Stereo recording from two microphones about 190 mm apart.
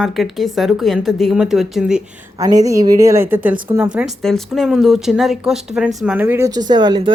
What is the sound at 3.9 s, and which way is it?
Speech, centre (ahead or behind).